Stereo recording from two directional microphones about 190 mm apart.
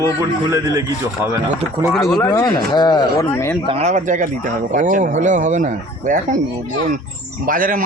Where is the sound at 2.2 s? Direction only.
20° left (ahead or behind).